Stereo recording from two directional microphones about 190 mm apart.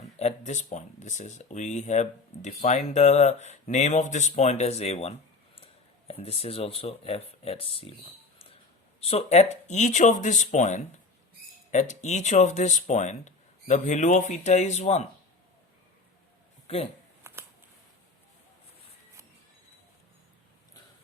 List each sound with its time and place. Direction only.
0.2 s speech: 35° left (ahead or behind)
9.0 s speech: 30° left (ahead or behind)
17.2 s a sound: 15° right (ahead or behind)